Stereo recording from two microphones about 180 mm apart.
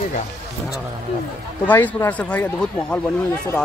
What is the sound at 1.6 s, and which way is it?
Speech, 10° left (ahead or behind).